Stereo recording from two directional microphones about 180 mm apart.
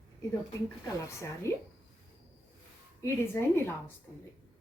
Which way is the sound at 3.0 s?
15° left (ahead or behind).